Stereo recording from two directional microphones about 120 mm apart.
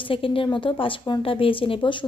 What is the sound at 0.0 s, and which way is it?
Speech, 50° left (ahead or behind).